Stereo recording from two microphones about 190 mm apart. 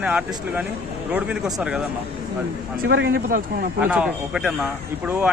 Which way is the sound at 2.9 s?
55° right (ahead or behind).